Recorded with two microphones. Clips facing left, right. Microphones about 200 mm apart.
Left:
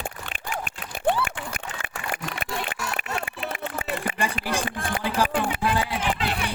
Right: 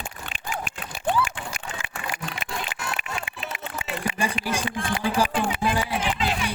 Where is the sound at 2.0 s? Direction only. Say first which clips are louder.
Left 2 dB; 55° left (ahead or behind).